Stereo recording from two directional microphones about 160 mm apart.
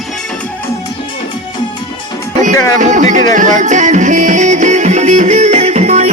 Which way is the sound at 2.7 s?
50° right (ahead or behind).